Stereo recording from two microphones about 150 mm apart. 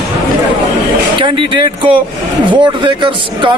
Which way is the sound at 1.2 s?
35° right (ahead or behind).